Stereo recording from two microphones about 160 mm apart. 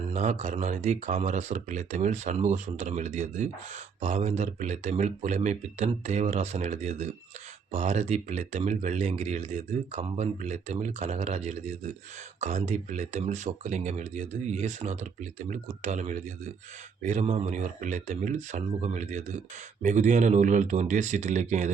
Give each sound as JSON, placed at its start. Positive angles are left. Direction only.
{"t": 0.1, "sound": "speech", "side_deg": -45}